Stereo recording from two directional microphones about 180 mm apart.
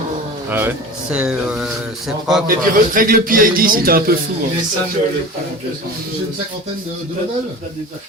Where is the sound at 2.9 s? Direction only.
55° right (ahead or behind).